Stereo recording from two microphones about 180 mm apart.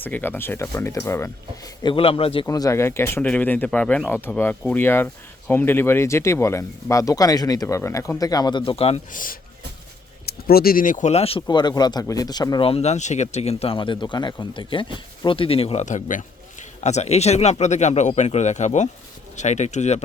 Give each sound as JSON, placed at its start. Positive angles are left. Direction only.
{"t": 0.0, "sound": "speech", "side_deg": 10}
{"t": 2.5, "sound": "speech", "side_deg": 20}
{"t": 9.1, "sound": "speech", "side_deg": 50}